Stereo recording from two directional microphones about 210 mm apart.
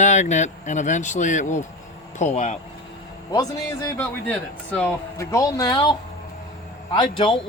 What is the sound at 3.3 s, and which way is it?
A man's voice, 15° left (ahead or behind).